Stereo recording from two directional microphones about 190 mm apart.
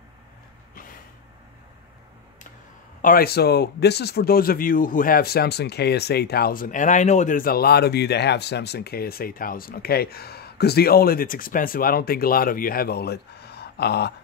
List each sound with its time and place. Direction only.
3.0 s speech: 50° left (ahead or behind)